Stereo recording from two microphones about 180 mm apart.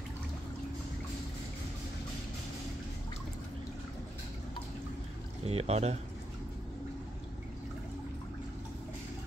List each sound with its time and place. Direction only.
5.4 s speech: 35° right (ahead or behind)